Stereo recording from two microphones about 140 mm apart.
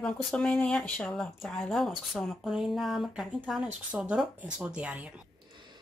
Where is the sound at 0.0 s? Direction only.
5° left (ahead or behind).